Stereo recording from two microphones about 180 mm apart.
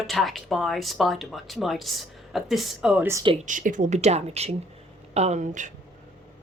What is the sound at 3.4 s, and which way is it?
Speech, 45° right (ahead or behind).